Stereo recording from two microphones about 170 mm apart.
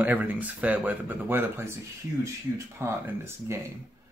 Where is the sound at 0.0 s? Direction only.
10° right (ahead or behind).